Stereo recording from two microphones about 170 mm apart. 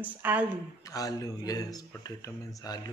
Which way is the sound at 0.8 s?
20° left (ahead or behind).